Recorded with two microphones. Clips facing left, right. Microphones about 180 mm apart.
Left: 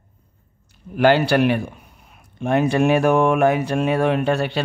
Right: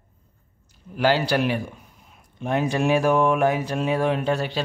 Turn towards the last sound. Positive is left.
turn(degrees=65)  # may be behind; listen again after turning